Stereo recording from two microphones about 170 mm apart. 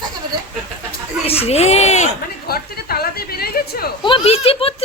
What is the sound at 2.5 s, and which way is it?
A woman's voice, 65° left (ahead or behind).